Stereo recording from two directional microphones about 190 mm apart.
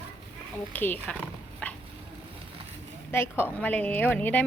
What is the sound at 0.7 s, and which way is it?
Speech, 10° left (ahead or behind).